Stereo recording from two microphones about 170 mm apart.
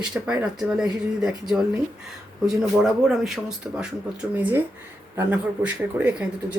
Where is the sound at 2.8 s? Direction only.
Centre (ahead or behind).